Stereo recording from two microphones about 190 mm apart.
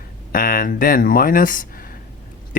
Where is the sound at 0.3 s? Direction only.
50° left (ahead or behind).